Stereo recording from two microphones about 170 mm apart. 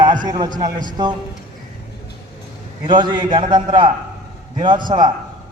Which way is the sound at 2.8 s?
30° right (ahead or behind).